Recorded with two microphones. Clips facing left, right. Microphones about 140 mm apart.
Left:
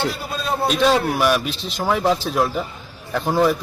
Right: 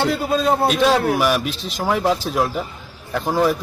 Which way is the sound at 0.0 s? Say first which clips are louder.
Right 6 dB; 70° right (ahead or behind).